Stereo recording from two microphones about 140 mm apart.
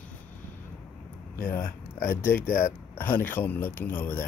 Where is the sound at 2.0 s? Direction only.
15° left (ahead or behind).